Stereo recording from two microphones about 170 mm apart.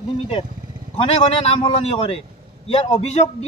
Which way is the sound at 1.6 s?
35° left (ahead or behind).